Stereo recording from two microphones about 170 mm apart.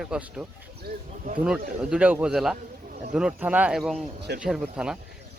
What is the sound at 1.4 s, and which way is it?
Speech, 5° right (ahead or behind).